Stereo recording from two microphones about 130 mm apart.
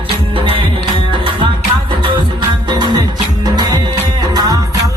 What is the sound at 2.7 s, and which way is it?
Music, 35° right (ahead or behind).